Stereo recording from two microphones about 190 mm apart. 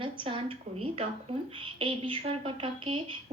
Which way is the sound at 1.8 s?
30° right (ahead or behind).